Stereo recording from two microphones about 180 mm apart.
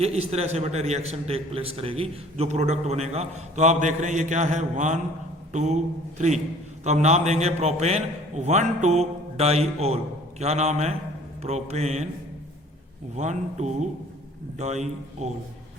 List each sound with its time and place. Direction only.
0.0 s a man's voice: 35° right (ahead or behind)
13.1 s a man's voice: 40° right (ahead or behind)